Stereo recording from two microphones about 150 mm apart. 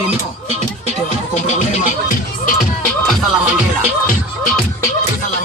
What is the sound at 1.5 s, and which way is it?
Music, 55° left (ahead or behind).